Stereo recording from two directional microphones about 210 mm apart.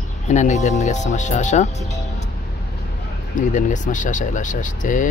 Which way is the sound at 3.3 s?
35° left (ahead or behind).